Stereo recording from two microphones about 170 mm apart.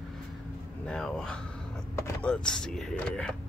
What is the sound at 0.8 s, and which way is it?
Speech, 5° left (ahead or behind).